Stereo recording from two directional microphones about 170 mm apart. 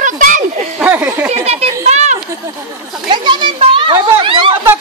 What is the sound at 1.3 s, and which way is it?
Children playing, 40° right (ahead or behind).